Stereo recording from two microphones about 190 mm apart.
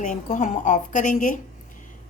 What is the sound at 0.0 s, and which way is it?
A woman's voice, 40° left (ahead or behind).